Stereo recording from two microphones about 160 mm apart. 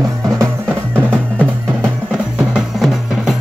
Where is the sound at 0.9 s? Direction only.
5° left (ahead or behind).